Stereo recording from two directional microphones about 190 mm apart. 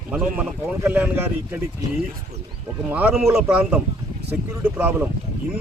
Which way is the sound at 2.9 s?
10° right (ahead or behind).